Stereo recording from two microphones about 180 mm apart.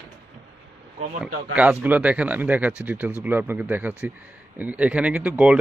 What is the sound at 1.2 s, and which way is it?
Speech, 5° right (ahead or behind).